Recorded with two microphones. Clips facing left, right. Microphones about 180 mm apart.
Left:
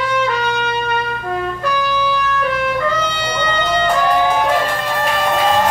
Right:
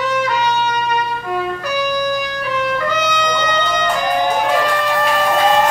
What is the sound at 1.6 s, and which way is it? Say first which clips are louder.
Music: even; 40° right (ahead or behind).